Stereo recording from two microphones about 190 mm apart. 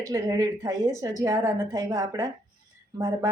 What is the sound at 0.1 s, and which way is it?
Speech, 15° right (ahead or behind).